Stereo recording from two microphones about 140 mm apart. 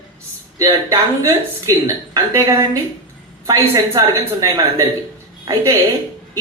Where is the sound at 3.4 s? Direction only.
25° right (ahead or behind).